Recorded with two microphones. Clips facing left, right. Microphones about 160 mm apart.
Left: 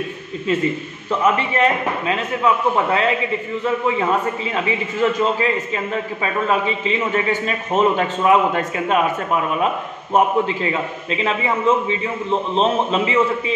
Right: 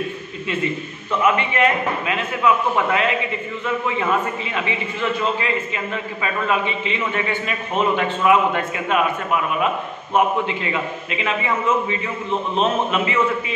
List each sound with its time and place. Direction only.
1.2 s a man's voice: 35° left (ahead or behind)
5.2 s a man's voice: 40° left (ahead or behind)